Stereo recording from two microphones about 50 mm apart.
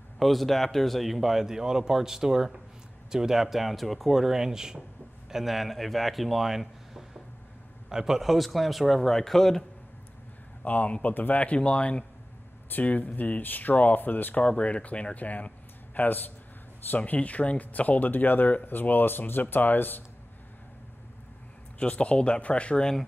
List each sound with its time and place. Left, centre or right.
0.2 s speech: centre
10.6 s speech: left
12.6 s speech: left
14.4 s speech: left
21.7 s speech: left